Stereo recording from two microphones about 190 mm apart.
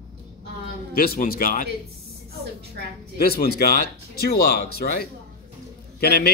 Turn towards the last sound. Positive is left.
turn(degrees=55)  # may be behind; listen again after turning